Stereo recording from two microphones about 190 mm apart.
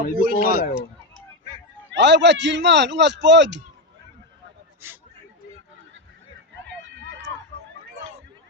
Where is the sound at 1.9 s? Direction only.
65° right (ahead or behind).